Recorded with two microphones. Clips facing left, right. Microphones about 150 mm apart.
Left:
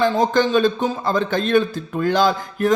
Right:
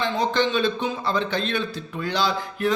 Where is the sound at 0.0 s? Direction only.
45° left (ahead or behind).